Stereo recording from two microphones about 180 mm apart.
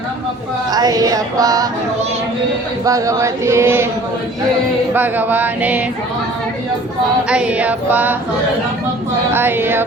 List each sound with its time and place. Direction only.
0.7 s a sound: 20° right (ahead or behind)
2.8 s chant: 20° right (ahead or behind)
4.9 s chant: 10° right (ahead or behind)
7.3 s chant: 5° right (ahead or behind)
9.3 s chant: 10° right (ahead or behind)